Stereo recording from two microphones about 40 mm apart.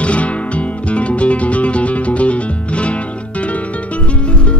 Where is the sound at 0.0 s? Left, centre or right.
Left.